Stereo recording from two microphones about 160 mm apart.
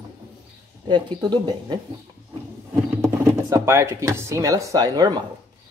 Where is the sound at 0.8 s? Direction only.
25° right (ahead or behind).